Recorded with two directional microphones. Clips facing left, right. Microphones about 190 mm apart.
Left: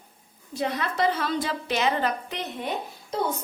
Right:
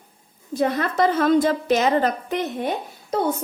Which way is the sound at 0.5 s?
50° right (ahead or behind).